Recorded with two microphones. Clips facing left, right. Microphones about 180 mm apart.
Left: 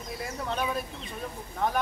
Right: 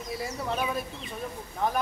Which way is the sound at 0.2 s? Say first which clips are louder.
Even; centre (ahead or behind).